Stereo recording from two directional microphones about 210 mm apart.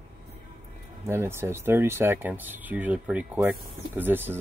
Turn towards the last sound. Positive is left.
turn(degrees=-10)  # may be behind; listen again after turning